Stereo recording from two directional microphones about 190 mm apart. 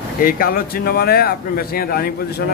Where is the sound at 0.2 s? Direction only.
50° left (ahead or behind).